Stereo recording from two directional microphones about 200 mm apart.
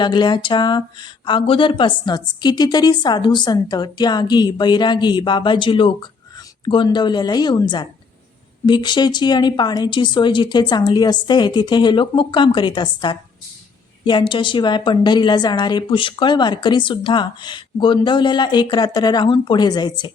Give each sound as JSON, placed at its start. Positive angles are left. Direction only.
{"t": 0.0, "sound": "a woman's voice", "side_deg": 20}